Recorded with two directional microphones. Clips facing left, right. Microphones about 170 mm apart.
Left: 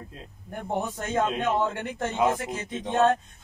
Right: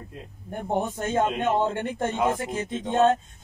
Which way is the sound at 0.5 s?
25° right (ahead or behind).